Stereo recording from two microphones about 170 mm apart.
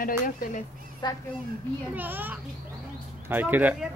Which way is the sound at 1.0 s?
25° left (ahead or behind).